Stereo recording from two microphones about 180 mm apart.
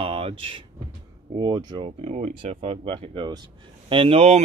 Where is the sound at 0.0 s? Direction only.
30° right (ahead or behind).